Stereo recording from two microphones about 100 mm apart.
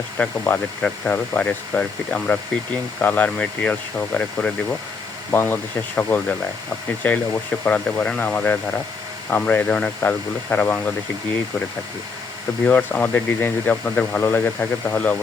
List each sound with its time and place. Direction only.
0.2 s speech: 15° left (ahead or behind)
12.6 s speech: 15° left (ahead or behind)